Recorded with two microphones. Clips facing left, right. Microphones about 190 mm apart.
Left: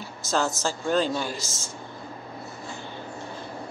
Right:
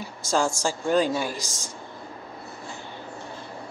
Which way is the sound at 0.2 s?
10° right (ahead or behind).